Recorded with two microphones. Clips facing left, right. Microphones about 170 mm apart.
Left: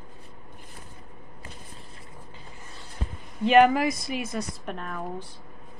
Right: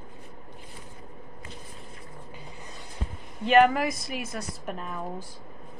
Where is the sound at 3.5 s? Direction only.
Centre (ahead or behind).